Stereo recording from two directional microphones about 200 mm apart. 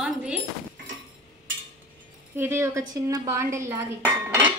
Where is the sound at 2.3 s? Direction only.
10° right (ahead or behind).